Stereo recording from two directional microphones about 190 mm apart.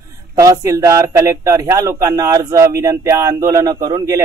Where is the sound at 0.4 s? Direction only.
15° right (ahead or behind).